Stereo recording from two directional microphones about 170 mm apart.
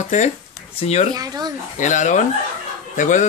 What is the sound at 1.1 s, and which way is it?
Speech, 25° right (ahead or behind).